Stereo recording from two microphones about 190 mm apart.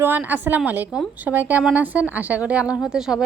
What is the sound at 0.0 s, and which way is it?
A woman's voice, 10° right (ahead or behind).